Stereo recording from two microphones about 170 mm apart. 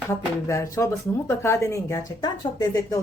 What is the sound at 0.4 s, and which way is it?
Speech, 20° left (ahead or behind).